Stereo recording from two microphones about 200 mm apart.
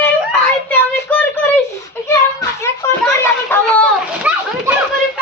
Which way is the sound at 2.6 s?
15° left (ahead or behind).